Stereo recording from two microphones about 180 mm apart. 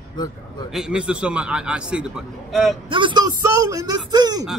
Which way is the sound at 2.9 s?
25° right (ahead or behind).